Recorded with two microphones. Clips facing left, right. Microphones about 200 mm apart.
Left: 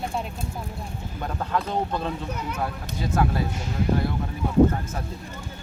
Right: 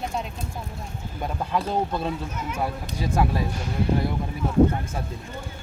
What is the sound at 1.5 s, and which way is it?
Speech, 10° right (ahead or behind).